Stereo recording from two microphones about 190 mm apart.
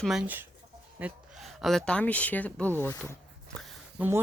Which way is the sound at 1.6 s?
5° left (ahead or behind).